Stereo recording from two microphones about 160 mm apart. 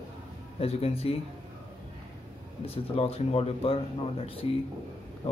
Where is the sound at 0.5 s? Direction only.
40° left (ahead or behind).